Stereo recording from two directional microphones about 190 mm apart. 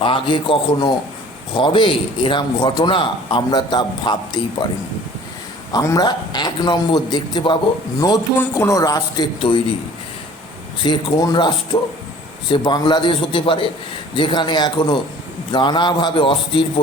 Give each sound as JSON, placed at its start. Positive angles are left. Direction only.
{"t": 0.0, "sound": "a man's voice", "side_deg": 25}
{"t": 5.7, "sound": "a man's voice", "side_deg": 20}
{"t": 10.8, "sound": "a man's voice", "side_deg": 25}